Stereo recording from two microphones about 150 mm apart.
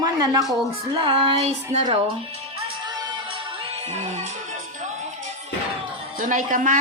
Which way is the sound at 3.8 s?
45° right (ahead or behind).